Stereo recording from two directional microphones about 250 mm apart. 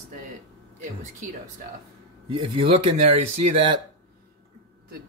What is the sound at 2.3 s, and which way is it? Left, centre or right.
Speech, right.